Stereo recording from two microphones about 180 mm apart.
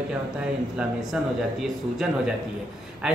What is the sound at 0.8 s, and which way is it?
A man's voice, centre (ahead or behind).